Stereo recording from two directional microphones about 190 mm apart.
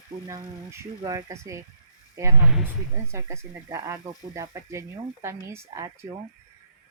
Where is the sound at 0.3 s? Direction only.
15° right (ahead or behind).